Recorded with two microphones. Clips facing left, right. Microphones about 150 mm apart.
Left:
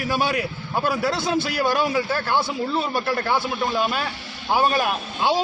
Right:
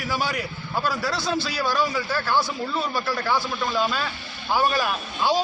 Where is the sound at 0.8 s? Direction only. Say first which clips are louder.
Left 4 dB; 55° left (ahead or behind).